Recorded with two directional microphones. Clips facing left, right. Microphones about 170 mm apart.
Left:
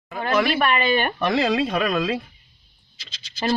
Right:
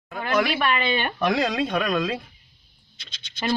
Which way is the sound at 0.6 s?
45° left (ahead or behind).